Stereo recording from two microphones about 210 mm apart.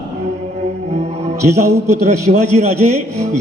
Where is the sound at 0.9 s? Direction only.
30° right (ahead or behind).